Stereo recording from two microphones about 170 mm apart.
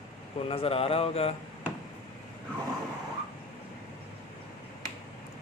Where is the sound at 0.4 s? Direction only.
35° left (ahead or behind).